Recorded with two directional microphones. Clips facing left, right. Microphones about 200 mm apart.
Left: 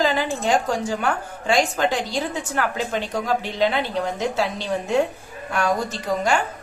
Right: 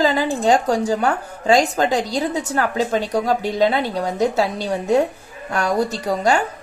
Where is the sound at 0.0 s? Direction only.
40° right (ahead or behind).